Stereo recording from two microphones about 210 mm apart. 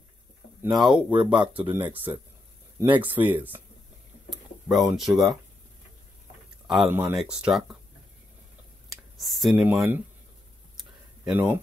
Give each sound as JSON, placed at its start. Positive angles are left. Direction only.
{"t": 0.6, "sound": "speech", "side_deg": 0}
{"t": 1.1, "sound": "speech", "side_deg": -20}
{"t": 1.7, "sound": "speech", "side_deg": -10}
{"t": 4.6, "sound": "speech", "side_deg": 0}
{"t": 6.7, "sound": "speech", "side_deg": 0}
{"t": 8.8, "sound": "speech", "side_deg": 0}
{"t": 10.8, "sound": "a sound", "side_deg": -5}